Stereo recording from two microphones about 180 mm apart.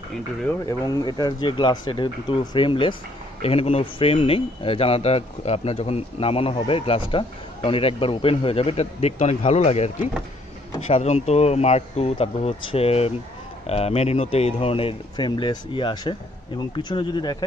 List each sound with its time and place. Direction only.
0.7 s speech: 20° left (ahead or behind)